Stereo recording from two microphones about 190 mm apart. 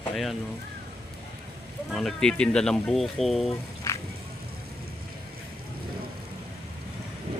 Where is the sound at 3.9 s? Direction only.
15° left (ahead or behind).